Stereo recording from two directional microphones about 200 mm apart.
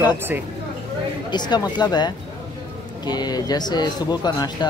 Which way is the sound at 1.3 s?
20° left (ahead or behind).